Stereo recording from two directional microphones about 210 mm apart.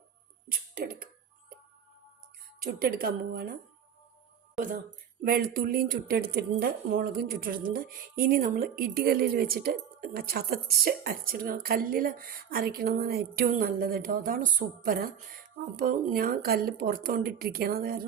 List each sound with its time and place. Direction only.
0.4 s a sound: 45° right (ahead or behind)
2.6 s a woman's voice: 45° right (ahead or behind)
5.2 s a woman's voice: 45° right (ahead or behind)